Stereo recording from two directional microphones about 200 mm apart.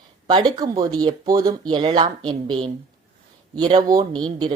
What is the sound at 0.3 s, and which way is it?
Speech, 20° right (ahead or behind).